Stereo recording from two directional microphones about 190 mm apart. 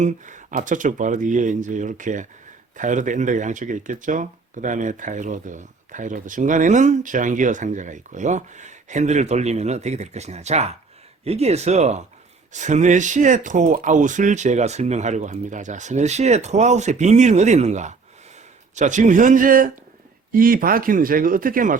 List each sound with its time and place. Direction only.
0.0 s speech: 40° right (ahead or behind)